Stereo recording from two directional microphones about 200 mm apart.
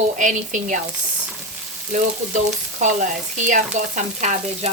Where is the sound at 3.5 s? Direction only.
40° right (ahead or behind).